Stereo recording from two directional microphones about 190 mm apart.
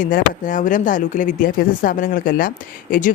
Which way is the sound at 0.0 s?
45° left (ahead or behind).